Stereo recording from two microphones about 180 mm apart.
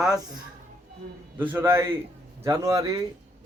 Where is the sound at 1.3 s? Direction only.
10° right (ahead or behind).